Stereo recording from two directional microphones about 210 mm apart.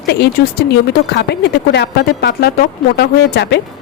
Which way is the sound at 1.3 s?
55° left (ahead or behind).